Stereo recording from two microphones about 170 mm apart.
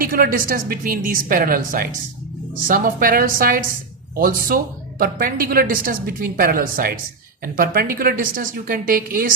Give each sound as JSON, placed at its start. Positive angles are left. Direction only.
{"t": 0.0, "sound": "speech", "side_deg": -55}